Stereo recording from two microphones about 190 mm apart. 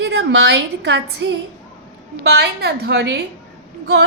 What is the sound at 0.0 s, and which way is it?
A woman's voice, 70° right (ahead or behind).